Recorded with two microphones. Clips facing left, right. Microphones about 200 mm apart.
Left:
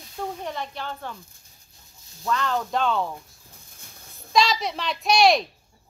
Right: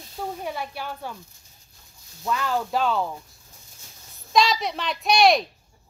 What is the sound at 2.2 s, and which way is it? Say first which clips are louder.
Speech: even; 10° right (ahead or behind).